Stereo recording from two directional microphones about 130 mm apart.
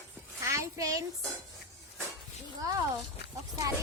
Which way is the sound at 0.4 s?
25° right (ahead or behind).